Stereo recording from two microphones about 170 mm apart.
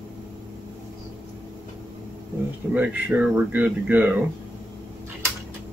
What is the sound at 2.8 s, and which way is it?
Speech, 10° right (ahead or behind).